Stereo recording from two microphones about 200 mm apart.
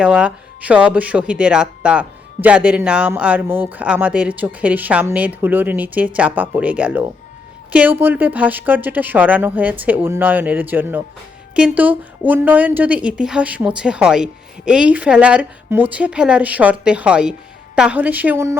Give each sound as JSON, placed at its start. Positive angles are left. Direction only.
{"t": 0.0, "sound": "speech", "side_deg": -5}